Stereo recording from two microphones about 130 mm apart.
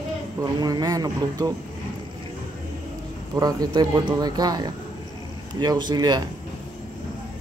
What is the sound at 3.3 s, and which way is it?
Speech, 30° right (ahead or behind).